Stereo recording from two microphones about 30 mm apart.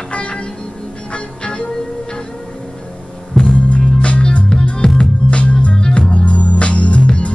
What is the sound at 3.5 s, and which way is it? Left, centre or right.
Music, left.